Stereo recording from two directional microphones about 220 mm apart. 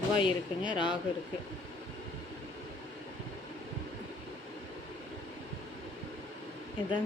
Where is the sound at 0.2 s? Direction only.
20° left (ahead or behind).